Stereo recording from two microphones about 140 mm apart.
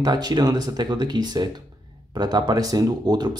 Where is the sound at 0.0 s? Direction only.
30° right (ahead or behind).